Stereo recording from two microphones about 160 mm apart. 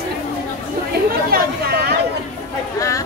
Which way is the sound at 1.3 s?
75° right (ahead or behind).